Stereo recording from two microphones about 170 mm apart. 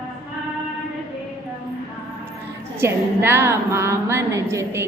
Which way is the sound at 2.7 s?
15° right (ahead or behind).